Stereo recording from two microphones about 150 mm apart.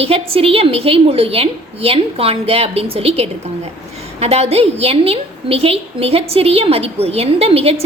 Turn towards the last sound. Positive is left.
turn(degrees=-40)  # may be behind; listen again after turning